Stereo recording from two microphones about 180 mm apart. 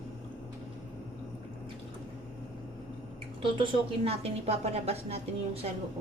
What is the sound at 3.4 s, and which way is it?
A woman's voice, 30° right (ahead or behind).